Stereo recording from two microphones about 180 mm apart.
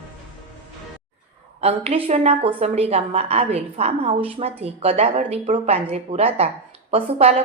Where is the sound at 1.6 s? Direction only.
35° right (ahead or behind).